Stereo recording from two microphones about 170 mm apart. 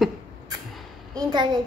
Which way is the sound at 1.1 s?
25° right (ahead or behind).